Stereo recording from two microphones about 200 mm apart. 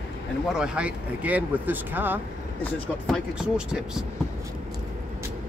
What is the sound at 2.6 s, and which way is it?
Speech, 5° left (ahead or behind).